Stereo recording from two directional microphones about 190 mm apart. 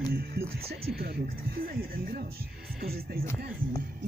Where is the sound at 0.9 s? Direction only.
55° right (ahead or behind).